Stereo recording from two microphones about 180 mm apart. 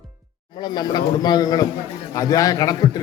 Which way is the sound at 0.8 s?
25° left (ahead or behind).